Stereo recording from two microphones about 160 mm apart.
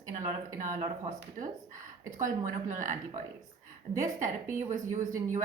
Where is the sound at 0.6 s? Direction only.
50° right (ahead or behind).